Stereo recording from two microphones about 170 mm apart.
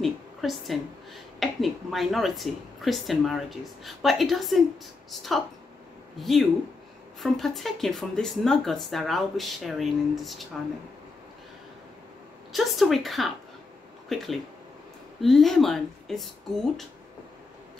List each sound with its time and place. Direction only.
0.0 s a sound: centre (ahead or behind)
1.4 s a woman's voice: centre (ahead or behind)
6.1 s a woman's voice: centre (ahead or behind)
12.5 s a woman's voice: centre (ahead or behind)